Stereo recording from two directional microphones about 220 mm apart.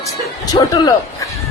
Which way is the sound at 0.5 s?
15° left (ahead or behind).